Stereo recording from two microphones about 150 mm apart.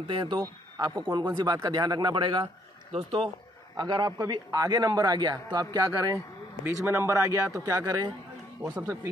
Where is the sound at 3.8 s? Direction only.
25° right (ahead or behind).